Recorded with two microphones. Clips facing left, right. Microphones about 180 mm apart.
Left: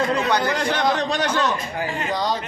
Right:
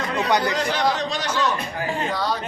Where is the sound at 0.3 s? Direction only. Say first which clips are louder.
Even; 20° right (ahead or behind).